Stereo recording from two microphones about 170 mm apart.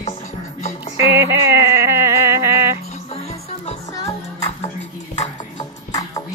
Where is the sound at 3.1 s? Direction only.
40° left (ahead or behind).